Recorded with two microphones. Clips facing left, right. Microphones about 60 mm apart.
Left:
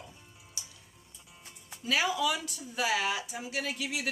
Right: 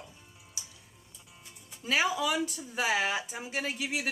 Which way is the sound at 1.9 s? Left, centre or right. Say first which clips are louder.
Right 1 dB; centre.